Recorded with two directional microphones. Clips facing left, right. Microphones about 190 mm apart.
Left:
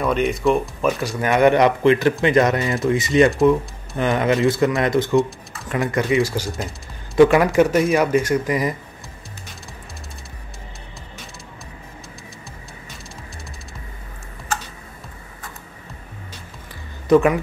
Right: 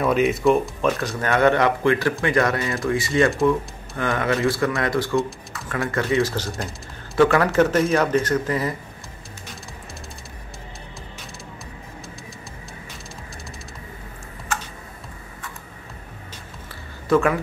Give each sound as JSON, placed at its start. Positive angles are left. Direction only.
{"t": 0.0, "sound": "speech", "side_deg": 0}
{"t": 17.1, "sound": "speech", "side_deg": 20}